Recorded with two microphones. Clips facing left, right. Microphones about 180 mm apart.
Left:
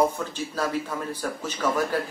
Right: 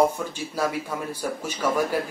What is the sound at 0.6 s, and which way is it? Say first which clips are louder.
Speech: right 1 dB; 10° right (ahead or behind).